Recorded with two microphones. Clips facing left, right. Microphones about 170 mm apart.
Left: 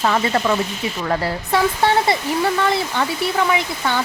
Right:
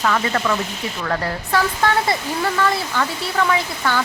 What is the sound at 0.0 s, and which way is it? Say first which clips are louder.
Speech: left 2 dB; 25° left (ahead or behind).